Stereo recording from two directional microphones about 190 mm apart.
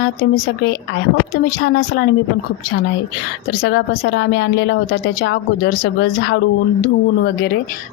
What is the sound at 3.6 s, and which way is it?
A woman's voice, 65° left (ahead or behind).